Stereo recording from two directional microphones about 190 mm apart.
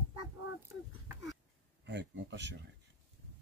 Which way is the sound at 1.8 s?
70° right (ahead or behind).